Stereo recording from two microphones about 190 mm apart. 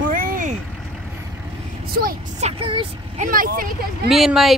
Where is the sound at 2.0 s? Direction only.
50° right (ahead or behind).